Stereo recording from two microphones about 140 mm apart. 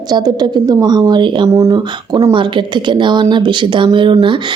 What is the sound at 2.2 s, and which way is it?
Speech, 35° right (ahead or behind).